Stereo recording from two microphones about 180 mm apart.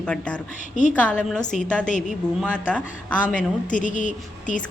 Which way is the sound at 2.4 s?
5° left (ahead or behind).